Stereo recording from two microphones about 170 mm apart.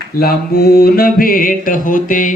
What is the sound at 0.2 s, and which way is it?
Mantra, 65° left (ahead or behind).